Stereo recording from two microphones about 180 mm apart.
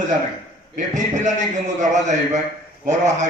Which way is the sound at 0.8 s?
40° right (ahead or behind).